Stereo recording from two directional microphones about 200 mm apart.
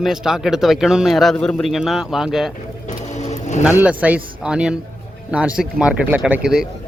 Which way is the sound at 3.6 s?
5° right (ahead or behind).